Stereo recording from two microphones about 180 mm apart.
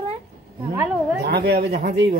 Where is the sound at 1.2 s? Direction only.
65° right (ahead or behind).